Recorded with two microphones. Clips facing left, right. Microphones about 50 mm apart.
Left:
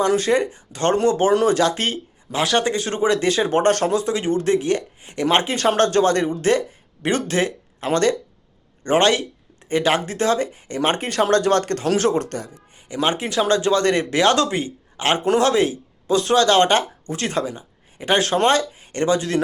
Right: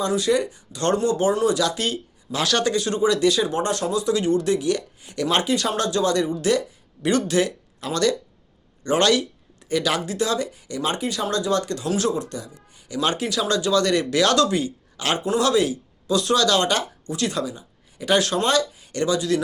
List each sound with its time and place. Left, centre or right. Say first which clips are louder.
0.0 s speech: left 3 dB; left
2.3 s speech: left 2 dB; left
4.0 s speech: even; left
12.9 s speech: left 2 dB; left